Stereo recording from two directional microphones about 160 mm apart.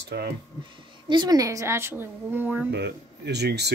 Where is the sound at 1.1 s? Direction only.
25° right (ahead or behind); by 2.7 s 10° right (ahead or behind).